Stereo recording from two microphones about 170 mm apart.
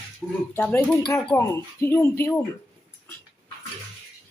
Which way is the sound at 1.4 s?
20° left (ahead or behind).